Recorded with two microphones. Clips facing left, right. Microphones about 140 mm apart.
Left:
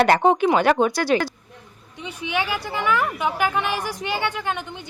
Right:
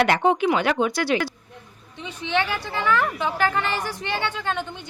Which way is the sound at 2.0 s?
10° left (ahead or behind).